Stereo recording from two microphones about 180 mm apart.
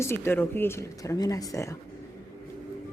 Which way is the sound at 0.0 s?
15° left (ahead or behind).